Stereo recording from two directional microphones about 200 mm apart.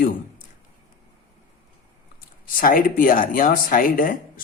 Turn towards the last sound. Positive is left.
turn(degrees=45)  # may be behind; listen again after turning